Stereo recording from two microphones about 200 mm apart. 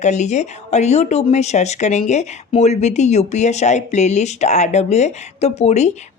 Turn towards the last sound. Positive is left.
turn(degrees=35)  # may be behind; listen again after turning